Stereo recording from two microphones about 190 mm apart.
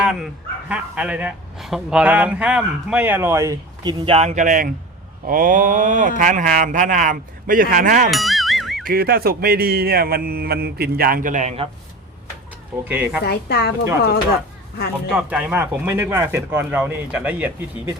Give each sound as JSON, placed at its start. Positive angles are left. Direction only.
{"t": 0.0, "sound": "speech", "side_deg": 0}
{"t": 4.0, "sound": "speech", "side_deg": -30}
{"t": 8.1, "sound": "music", "side_deg": 0}
{"t": 8.9, "sound": "speech", "side_deg": -50}
{"t": 12.8, "sound": "speech", "side_deg": -10}
{"t": 13.2, "sound": "a woman's voice", "side_deg": 55}
{"t": 15.1, "sound": "speech", "side_deg": -5}